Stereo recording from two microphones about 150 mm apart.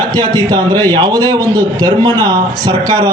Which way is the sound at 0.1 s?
25° right (ahead or behind).